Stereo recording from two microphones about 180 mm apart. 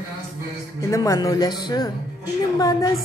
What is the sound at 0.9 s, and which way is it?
Speech, 20° left (ahead or behind).